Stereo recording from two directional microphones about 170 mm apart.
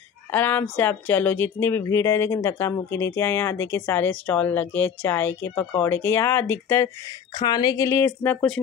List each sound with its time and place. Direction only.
0.3 s speech: 10° left (ahead or behind)
7.3 s speech: 25° left (ahead or behind); by 8.5 s 10° left (ahead or behind)